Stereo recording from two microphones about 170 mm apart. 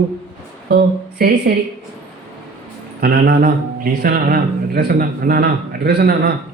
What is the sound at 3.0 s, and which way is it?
A man's voice, 65° right (ahead or behind).